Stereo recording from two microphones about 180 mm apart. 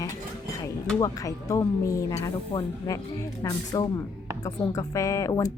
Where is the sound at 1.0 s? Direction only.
20° left (ahead or behind).